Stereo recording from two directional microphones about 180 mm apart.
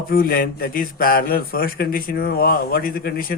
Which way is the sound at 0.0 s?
55° left (ahead or behind).